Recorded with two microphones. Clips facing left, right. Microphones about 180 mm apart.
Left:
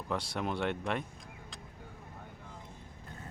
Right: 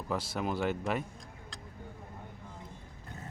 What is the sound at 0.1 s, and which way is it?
Speech, centre (ahead or behind).